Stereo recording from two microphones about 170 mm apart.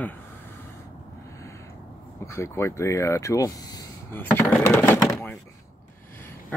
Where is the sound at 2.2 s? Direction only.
15° left (ahead or behind).